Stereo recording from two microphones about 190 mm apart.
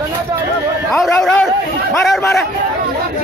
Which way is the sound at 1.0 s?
Centre (ahead or behind).